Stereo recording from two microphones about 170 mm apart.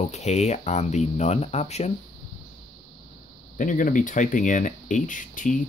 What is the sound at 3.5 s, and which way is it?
Speech, 50° left (ahead or behind).